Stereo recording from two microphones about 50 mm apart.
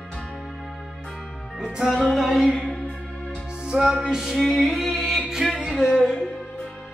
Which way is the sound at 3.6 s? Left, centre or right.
Centre.